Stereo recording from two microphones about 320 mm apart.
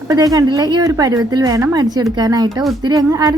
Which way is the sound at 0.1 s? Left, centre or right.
Centre.